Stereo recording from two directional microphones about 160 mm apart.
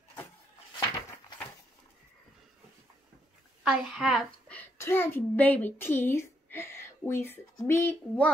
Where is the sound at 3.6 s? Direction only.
5° right (ahead or behind).